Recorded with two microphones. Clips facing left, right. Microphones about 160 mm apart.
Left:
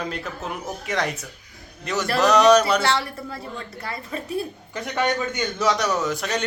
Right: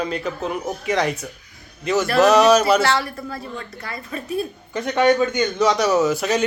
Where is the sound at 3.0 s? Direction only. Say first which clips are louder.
Right 3 dB; 25° left (ahead or behind).